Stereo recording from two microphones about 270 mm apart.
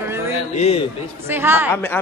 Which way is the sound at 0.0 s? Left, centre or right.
Centre.